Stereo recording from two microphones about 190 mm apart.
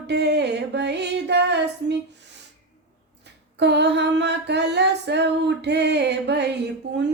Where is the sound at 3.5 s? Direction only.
60° right (ahead or behind).